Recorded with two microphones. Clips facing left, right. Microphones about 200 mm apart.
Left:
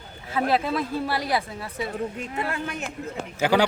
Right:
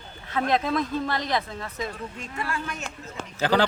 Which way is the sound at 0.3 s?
5° left (ahead or behind).